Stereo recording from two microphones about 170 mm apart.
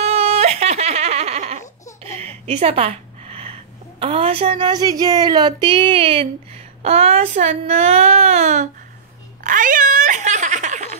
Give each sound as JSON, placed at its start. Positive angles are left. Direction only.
{"t": 0.0, "sound": "giggle", "side_deg": -35}
{"t": 2.0, "sound": "a woman's voice", "side_deg": -40}
{"t": 9.4, "sound": "a sound", "side_deg": -50}